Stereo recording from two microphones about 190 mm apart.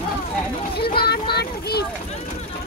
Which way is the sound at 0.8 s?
55° left (ahead or behind).